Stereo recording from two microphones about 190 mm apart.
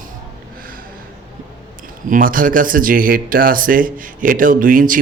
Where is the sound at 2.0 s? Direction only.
45° right (ahead or behind).